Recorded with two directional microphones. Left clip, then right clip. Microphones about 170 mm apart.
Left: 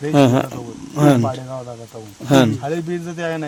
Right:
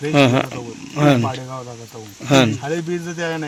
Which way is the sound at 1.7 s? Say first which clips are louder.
Left 1 dB; 5° left (ahead or behind).